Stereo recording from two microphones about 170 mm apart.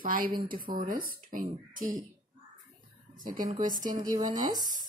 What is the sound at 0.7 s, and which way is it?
Speech, 55° right (ahead or behind).